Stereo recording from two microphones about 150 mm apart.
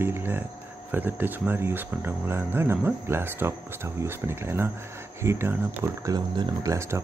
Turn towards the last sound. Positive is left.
turn(degrees=-20)  # may be behind; listen again after turning